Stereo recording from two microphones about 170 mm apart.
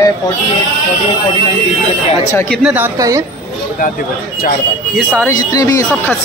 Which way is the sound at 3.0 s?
20° right (ahead or behind).